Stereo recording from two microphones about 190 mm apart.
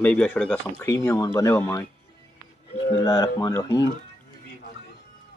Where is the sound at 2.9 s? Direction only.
20° left (ahead or behind).